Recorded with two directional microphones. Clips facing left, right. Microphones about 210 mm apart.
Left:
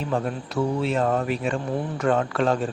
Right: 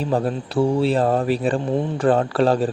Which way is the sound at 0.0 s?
35° right (ahead or behind).